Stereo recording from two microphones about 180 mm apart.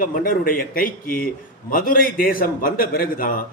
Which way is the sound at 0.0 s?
50° left (ahead or behind).